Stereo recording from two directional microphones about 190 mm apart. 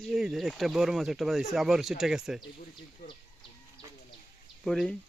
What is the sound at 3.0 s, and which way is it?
Speech, 55° left (ahead or behind).